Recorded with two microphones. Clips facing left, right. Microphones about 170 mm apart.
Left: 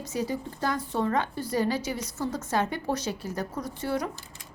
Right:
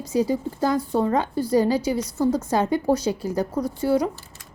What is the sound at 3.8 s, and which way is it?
Speech, 30° right (ahead or behind).